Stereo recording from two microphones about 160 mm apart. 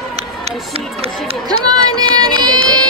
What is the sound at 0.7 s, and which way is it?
Speech, 35° right (ahead or behind).